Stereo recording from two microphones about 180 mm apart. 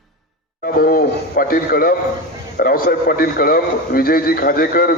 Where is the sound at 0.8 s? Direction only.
55° left (ahead or behind).